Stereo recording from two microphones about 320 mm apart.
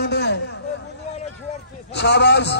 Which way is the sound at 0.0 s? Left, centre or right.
Left.